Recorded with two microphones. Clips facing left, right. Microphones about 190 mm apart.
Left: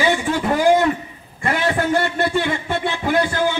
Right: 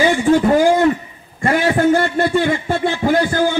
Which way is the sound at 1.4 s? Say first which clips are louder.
Right 6 dB; 35° right (ahead or behind).